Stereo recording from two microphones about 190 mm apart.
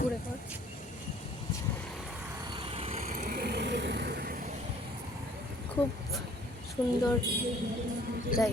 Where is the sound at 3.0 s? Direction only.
45° right (ahead or behind).